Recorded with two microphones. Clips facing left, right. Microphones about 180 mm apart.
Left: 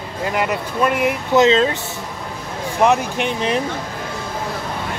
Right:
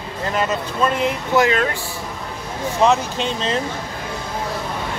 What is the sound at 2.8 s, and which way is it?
Speech, 15° left (ahead or behind).